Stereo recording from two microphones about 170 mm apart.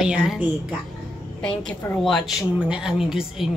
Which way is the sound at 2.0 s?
Centre (ahead or behind).